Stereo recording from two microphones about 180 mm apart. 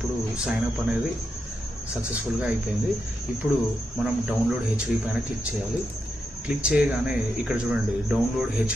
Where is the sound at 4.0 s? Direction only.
5° right (ahead or behind).